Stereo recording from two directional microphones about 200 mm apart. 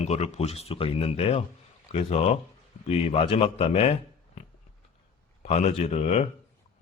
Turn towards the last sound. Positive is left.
turn(degrees=30)  # may be behind; listen again after turning